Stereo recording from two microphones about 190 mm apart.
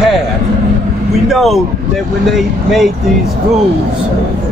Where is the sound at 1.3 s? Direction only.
Centre (ahead or behind).